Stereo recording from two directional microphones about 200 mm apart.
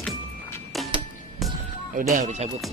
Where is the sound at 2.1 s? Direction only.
35° right (ahead or behind).